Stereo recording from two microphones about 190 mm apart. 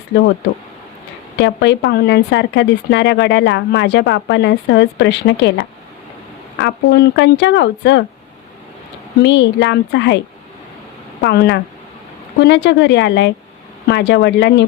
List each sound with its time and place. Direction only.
1.4 s speech: 65° left (ahead or behind)
6.6 s speech: 60° left (ahead or behind)
9.2 s speech: 70° left (ahead or behind)
11.2 s speech: 65° left (ahead or behind)